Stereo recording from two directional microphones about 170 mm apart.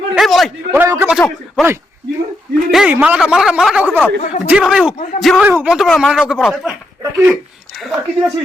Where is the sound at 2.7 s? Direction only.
Centre (ahead or behind).